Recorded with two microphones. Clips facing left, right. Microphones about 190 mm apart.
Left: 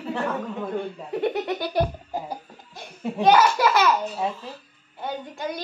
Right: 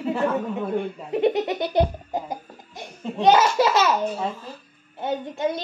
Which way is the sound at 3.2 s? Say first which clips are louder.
Right 1 dB; 25° right (ahead or behind).